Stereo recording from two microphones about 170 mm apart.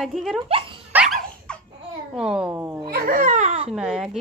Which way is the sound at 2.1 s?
5° right (ahead or behind).